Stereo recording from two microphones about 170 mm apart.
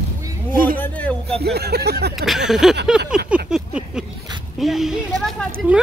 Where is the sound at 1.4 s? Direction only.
70° right (ahead or behind).